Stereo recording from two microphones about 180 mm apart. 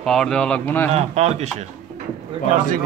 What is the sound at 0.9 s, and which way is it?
Speech, 35° right (ahead or behind).